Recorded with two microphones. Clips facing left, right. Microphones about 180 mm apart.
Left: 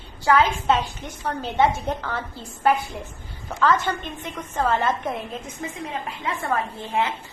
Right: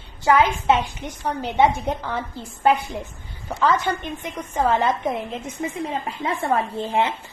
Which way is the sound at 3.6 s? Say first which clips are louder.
Right 1 dB; 15° right (ahead or behind).